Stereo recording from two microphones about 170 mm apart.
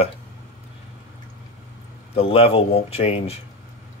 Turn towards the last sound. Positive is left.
turn(degrees=35)  # may be behind; listen again after turning